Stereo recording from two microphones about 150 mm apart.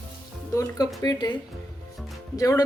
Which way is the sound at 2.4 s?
20° left (ahead or behind).